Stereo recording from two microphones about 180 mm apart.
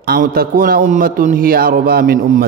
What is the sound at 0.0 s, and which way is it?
A man's voice, 60° right (ahead or behind).